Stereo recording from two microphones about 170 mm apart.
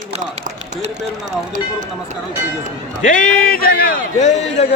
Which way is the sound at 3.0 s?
50° left (ahead or behind).